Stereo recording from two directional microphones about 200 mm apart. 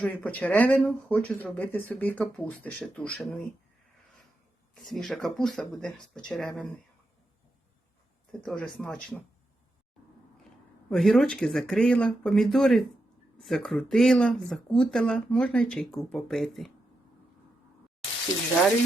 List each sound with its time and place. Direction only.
0.0 s speech: 5° left (ahead or behind)
4.7 s speech: centre (ahead or behind)
8.4 s speech: 5° left (ahead or behind)
10.8 s speech: 5° left (ahead or behind)